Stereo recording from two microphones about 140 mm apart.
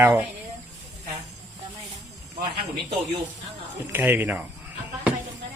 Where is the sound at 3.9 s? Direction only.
15° right (ahead or behind).